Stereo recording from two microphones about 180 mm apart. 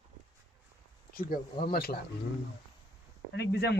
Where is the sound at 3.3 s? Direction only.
65° left (ahead or behind).